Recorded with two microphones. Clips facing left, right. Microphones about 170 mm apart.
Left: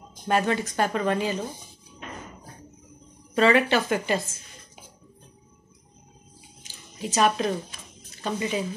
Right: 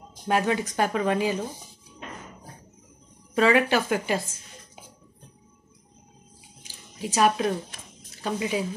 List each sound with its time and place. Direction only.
0.3 s speech: 10° right (ahead or behind)
3.3 s speech: 5° right (ahead or behind)
6.6 s a sound: 10° right (ahead or behind)
8.2 s speech: 5° right (ahead or behind)